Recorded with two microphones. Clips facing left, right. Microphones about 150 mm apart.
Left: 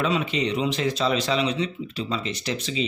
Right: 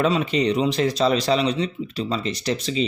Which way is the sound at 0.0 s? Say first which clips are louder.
Right 4 dB; 40° right (ahead or behind).